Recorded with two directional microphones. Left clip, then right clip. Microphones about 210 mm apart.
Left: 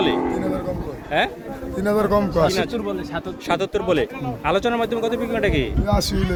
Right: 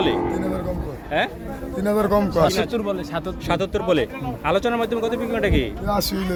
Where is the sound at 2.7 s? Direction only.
55° right (ahead or behind).